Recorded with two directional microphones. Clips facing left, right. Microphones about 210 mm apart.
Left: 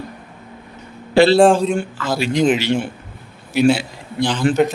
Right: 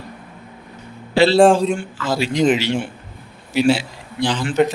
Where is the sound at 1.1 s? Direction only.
50° left (ahead or behind).